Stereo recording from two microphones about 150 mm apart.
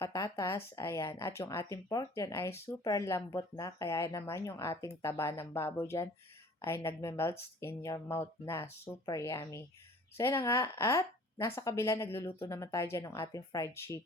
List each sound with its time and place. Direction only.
0.0 s a woman's voice: 20° left (ahead or behind)